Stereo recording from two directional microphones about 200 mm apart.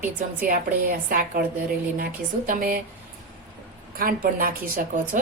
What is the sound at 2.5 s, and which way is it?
Speech, 45° right (ahead or behind).